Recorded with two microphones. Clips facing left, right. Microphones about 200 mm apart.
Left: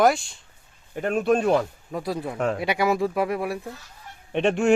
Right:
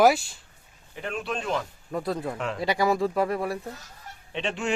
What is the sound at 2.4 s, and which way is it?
Speech, 45° left (ahead or behind).